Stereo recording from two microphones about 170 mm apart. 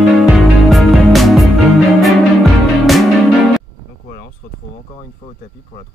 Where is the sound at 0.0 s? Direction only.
Centre (ahead or behind).